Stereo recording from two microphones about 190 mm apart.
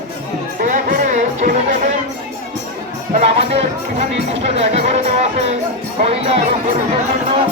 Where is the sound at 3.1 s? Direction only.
35° right (ahead or behind).